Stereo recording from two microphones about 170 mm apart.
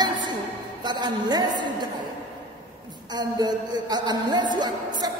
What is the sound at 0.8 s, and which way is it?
A man's voice, 25° right (ahead or behind).